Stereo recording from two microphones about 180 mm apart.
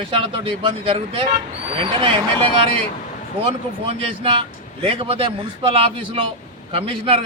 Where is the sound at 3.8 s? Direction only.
35° right (ahead or behind).